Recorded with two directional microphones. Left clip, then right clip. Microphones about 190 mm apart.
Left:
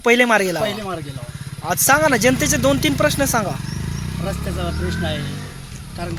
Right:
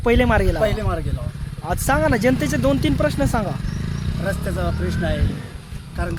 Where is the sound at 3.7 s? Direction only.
40° left (ahead or behind).